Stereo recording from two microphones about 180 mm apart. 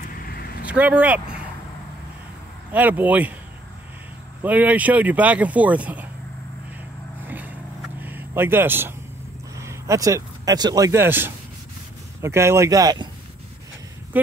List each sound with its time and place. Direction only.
0.7 s speech: 10° right (ahead or behind)
2.7 s speech: 10° right (ahead or behind)
4.4 s speech: 10° right (ahead or behind)
7.2 s vehicle: 10° right (ahead or behind)
8.0 s a sound: 10° right (ahead or behind)
9.6 s speech: 15° right (ahead or behind)
14.1 s speech: 10° right (ahead or behind)